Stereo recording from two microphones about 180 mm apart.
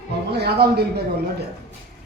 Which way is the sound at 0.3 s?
65° right (ahead or behind).